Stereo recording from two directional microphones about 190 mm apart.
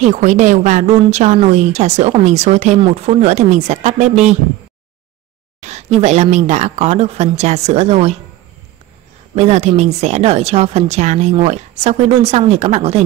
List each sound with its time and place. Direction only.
0.0 s a woman's voice: 40° right (ahead or behind)
5.6 s a woman's voice: 35° right (ahead or behind)
9.3 s a woman's voice: 35° right (ahead or behind)